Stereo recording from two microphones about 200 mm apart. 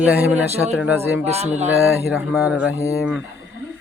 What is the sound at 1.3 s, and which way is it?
Speech, 30° right (ahead or behind).